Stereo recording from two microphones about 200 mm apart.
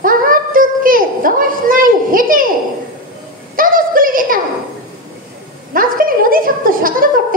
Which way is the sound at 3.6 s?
45° right (ahead or behind).